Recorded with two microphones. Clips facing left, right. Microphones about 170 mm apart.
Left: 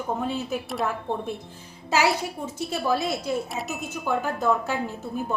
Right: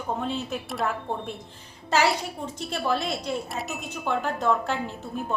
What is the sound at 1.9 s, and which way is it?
Speech, 5° left (ahead or behind).